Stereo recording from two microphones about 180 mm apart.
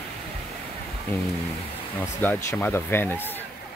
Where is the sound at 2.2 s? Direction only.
10° left (ahead or behind).